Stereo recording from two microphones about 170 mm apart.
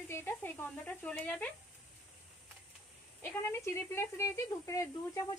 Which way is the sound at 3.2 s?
15° left (ahead or behind).